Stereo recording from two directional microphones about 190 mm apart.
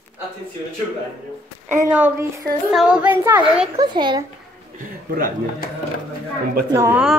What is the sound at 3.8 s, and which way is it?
Speech, 25° right (ahead or behind).